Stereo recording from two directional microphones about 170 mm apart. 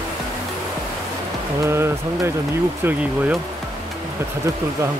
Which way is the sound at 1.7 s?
15° right (ahead or behind).